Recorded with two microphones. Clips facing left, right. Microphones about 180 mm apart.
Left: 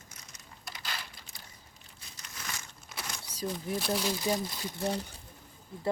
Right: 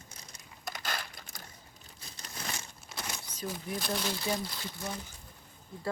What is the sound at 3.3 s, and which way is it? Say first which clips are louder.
Speech: left 4 dB; 35° left (ahead or behind).